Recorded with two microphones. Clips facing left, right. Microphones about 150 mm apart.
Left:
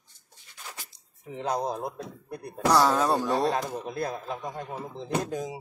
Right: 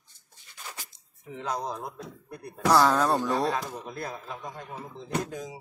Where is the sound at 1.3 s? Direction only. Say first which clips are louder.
Left 3 dB; 25° left (ahead or behind).